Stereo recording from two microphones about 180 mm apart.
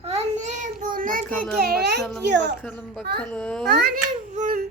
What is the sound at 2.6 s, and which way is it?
A child's voice, 5° left (ahead or behind).